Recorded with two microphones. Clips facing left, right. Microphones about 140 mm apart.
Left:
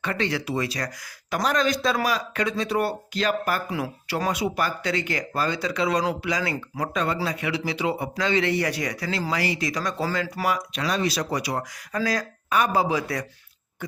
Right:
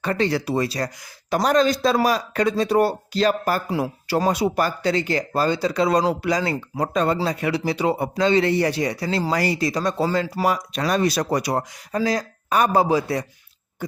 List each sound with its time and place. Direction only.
0.0 s speech: 35° right (ahead or behind)
11.9 s speech: 25° right (ahead or behind)
12.5 s speech: 40° right (ahead or behind)
13.0 s speech: 30° right (ahead or behind)